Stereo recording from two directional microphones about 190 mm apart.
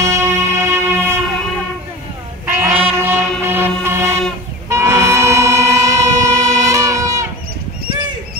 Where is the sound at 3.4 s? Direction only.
10° right (ahead or behind).